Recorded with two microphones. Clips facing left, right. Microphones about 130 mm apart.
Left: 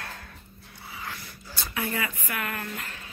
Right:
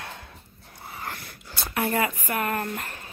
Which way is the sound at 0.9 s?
50° right (ahead or behind).